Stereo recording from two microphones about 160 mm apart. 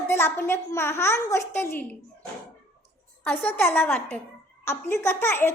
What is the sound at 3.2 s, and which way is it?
A child's voice, 10° left (ahead or behind).